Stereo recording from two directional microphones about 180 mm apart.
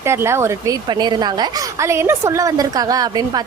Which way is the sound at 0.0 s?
15° right (ahead or behind).